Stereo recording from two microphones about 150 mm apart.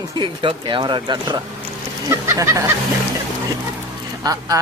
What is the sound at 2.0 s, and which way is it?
Speech, 20° right (ahead or behind).